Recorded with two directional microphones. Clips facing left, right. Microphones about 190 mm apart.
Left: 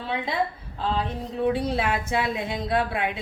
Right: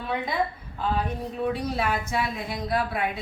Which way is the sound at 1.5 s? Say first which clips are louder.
Left 2 dB; 25° left (ahead or behind).